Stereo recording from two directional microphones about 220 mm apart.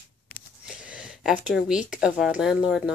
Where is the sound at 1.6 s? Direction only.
5° right (ahead or behind).